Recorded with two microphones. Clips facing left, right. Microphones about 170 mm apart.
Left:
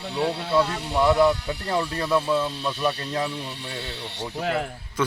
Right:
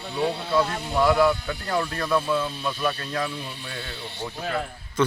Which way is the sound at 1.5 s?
25° left (ahead or behind).